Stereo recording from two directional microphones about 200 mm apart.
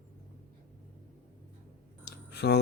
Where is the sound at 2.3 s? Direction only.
55° left (ahead or behind).